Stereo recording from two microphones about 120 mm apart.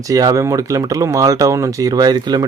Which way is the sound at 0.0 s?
30° right (ahead or behind).